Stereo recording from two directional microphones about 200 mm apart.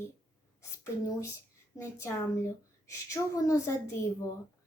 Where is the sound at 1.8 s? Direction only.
15° left (ahead or behind).